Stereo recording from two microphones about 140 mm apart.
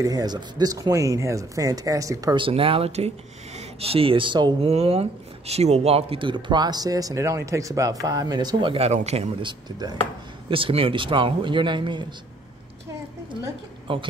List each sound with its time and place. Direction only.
0.0 s speech: 25° right (ahead or behind)
2.4 s speech: 40° right (ahead or behind)
10.5 s speech: 40° right (ahead or behind)
13.9 s speech: 40° right (ahead or behind)